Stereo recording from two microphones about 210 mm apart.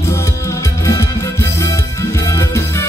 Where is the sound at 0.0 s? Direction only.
15° left (ahead or behind).